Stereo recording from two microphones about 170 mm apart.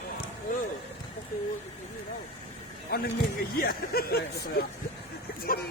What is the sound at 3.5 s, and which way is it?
Speech, 60° left (ahead or behind).